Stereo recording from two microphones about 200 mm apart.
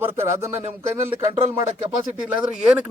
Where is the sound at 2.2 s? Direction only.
5° right (ahead or behind).